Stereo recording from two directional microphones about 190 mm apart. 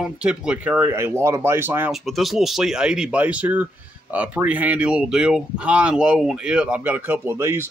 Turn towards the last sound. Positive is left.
turn(degrees=-10)  # may be behind; listen again after turning